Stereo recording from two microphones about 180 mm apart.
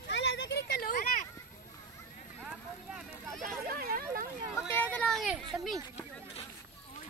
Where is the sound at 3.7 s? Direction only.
55° right (ahead or behind).